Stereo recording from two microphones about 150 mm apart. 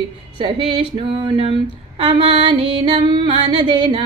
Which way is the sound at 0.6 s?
35° right (ahead or behind).